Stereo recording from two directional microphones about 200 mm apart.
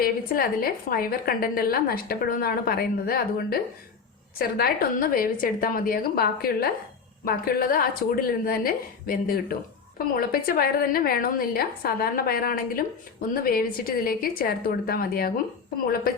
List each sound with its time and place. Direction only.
0.0 s a woman's voice: 45° left (ahead or behind)